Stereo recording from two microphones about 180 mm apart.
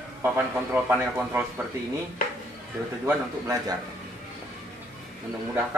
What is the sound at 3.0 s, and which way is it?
Speech, 20° right (ahead or behind).